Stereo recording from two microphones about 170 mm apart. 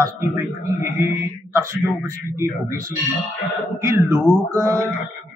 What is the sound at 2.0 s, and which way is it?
Speech, 15° right (ahead or behind).